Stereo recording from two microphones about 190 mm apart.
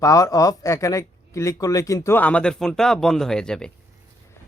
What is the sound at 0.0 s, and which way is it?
Speech, 15° left (ahead or behind).